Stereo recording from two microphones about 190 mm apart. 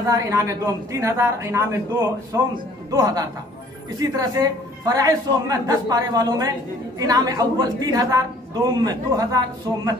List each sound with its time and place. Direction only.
0.1 s a man's voice: 15° right (ahead or behind)